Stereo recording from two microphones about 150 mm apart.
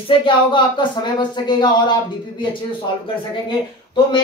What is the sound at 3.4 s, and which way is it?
Speech, 30° left (ahead or behind).